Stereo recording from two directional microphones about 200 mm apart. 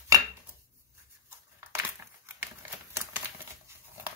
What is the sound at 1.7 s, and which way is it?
Crumpling, 10° right (ahead or behind).